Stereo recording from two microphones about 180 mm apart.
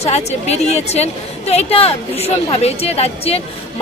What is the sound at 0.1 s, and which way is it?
A woman's voice, 35° left (ahead or behind).